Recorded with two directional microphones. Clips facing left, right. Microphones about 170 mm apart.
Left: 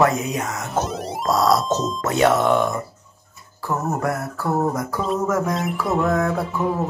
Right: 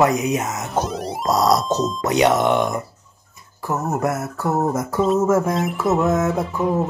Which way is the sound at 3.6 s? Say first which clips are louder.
Right 1 dB; 20° right (ahead or behind).